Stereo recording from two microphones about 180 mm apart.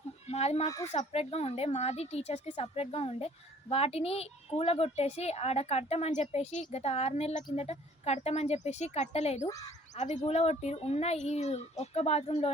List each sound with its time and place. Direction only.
0.3 s speech: 35° left (ahead or behind)